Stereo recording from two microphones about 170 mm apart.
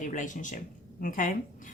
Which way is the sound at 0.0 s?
50° left (ahead or behind).